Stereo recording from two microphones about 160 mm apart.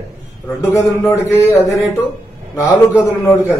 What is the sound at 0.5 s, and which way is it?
Speech, 20° left (ahead or behind).